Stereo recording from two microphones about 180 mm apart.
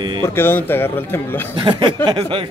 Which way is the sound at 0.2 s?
10° left (ahead or behind).